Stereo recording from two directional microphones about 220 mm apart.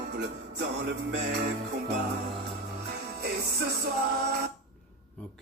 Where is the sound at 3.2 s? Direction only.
45° right (ahead or behind).